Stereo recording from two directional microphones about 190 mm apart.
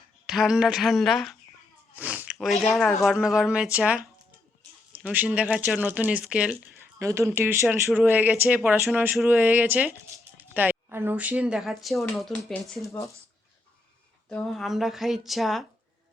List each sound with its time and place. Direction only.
0.3 s speech: centre (ahead or behind)
5.0 s speech: 10° right (ahead or behind)
12.9 s speech: 15° left (ahead or behind)
14.3 s speech: 5° left (ahead or behind)